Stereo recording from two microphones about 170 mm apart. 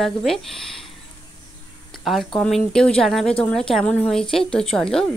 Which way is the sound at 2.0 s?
Centre (ahead or behind).